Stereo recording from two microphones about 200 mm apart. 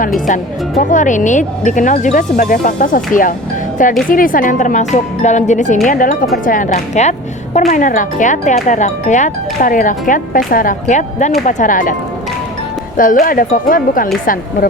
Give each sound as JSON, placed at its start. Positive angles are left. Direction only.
{"t": 0.8, "sound": "a woman's voice", "side_deg": 40}
{"t": 13.0, "sound": "speech", "side_deg": 45}